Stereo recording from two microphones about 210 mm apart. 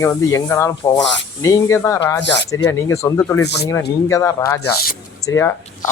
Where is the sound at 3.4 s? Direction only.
55° left (ahead or behind).